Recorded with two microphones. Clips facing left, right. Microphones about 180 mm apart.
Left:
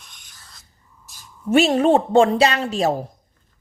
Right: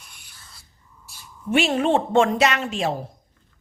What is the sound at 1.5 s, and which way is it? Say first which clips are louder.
Speech: left 5 dB; 40° left (ahead or behind).